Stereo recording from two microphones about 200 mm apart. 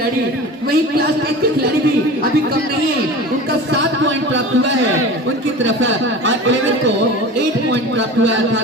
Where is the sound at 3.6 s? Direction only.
70° right (ahead or behind).